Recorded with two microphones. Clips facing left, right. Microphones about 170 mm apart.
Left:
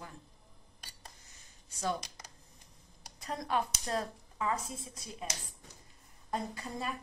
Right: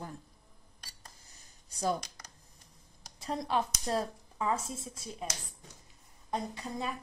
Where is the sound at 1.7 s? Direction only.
35° right (ahead or behind).